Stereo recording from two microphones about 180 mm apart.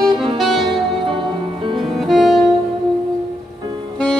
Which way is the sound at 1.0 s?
25° right (ahead or behind).